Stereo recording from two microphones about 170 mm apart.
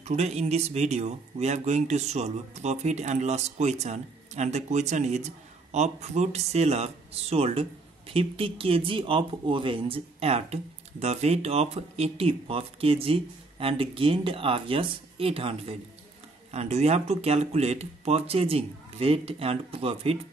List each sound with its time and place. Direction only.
0.0 s speech: 40° right (ahead or behind)